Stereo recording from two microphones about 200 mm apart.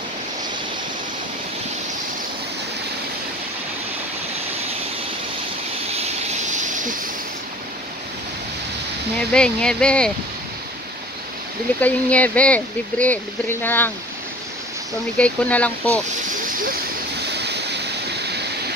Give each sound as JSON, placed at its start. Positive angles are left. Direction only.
{"t": 6.5, "sound": "a sound", "side_deg": -40}
{"t": 9.3, "sound": "speech", "side_deg": 5}
{"t": 11.8, "sound": "speech", "side_deg": 5}
{"t": 15.1, "sound": "speech", "side_deg": 5}
{"t": 17.3, "sound": "vehicle", "side_deg": -55}